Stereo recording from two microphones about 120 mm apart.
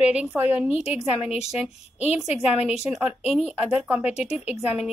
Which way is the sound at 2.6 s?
5° right (ahead or behind).